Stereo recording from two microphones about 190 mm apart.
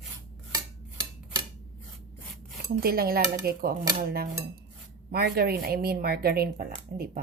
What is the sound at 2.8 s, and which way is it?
Speech, 55° right (ahead or behind).